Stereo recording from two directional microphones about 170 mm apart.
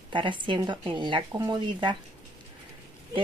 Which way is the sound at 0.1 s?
30° right (ahead or behind).